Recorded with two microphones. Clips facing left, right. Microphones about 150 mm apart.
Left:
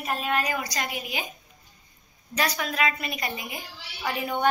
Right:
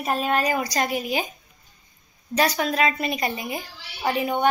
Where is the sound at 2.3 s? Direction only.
30° right (ahead or behind).